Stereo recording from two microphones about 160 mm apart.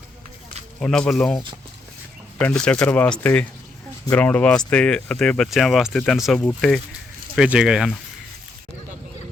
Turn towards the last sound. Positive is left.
turn(degrees=-5)  # may be behind; listen again after turning